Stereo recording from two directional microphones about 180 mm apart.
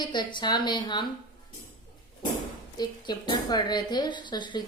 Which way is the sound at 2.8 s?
25° left (ahead or behind).